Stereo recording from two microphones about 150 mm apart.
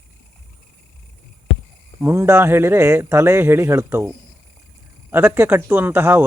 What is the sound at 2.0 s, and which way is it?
Speech, 15° right (ahead or behind).